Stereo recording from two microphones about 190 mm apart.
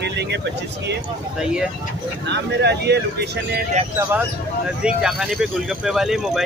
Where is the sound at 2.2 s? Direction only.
65° right (ahead or behind).